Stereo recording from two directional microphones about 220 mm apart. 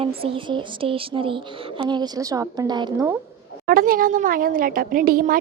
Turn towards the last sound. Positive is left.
turn(degrees=-40)  # may be behind; listen again after turning